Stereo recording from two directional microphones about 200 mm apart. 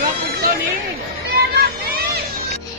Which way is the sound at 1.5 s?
50° right (ahead or behind).